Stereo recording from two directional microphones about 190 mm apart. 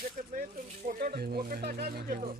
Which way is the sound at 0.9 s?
50° right (ahead or behind).